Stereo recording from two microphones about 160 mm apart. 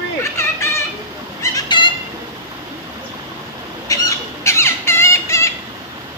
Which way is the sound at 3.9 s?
20° left (ahead or behind).